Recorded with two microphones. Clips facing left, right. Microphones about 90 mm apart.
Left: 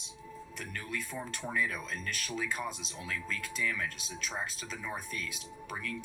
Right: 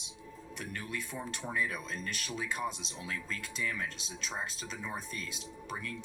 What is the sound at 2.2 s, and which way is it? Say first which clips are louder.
Speech: even; 35° right (ahead or behind).